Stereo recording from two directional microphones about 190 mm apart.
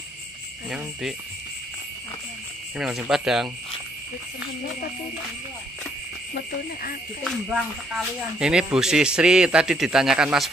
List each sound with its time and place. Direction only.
0.7 s a man's voice: centre (ahead or behind)
2.8 s a man's voice: 5° right (ahead or behind)
6.3 s cricket: 50° left (ahead or behind)
7.2 s a man's voice: 5° right (ahead or behind)